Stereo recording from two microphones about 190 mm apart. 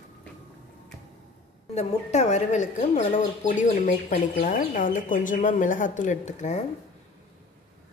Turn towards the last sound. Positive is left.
turn(degrees=40)  # may be behind; listen again after turning